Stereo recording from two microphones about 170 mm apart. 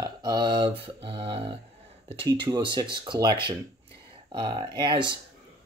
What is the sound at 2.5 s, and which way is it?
Speech, 25° right (ahead or behind).